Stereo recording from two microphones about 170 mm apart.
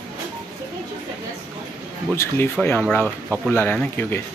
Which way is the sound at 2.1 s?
15° left (ahead or behind).